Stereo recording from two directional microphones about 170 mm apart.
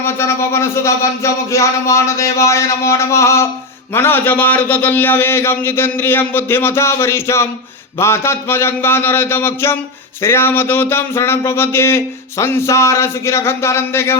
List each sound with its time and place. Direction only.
0.0 s speech: 15° left (ahead or behind)